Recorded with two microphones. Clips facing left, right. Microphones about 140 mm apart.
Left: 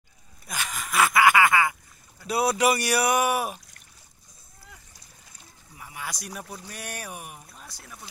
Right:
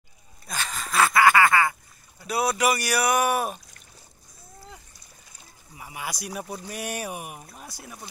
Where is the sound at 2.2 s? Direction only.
30° left (ahead or behind).